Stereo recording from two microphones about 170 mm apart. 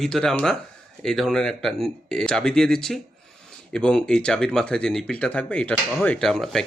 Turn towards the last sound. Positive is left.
turn(degrees=0)  # may be behind; listen again after turning